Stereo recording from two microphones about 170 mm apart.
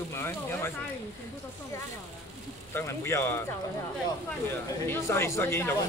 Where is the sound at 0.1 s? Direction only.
15° left (ahead or behind).